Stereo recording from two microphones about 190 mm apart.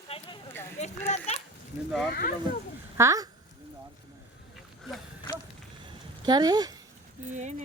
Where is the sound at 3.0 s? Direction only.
15° right (ahead or behind).